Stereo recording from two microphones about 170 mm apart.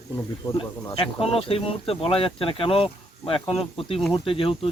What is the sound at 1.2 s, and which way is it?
Speech, 35° left (ahead or behind).